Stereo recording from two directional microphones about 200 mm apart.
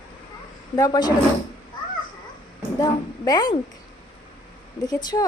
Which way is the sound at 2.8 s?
20° left (ahead or behind).